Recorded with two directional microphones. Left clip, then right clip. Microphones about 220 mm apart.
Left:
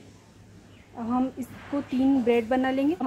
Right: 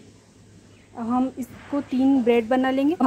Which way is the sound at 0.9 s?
25° right (ahead or behind).